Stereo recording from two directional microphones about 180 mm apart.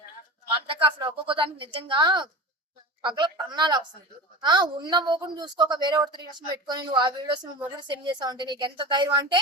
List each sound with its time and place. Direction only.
0.7 s a woman's voice: 30° right (ahead or behind)